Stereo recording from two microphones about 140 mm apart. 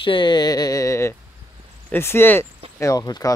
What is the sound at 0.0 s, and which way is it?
Speech, 35° left (ahead or behind).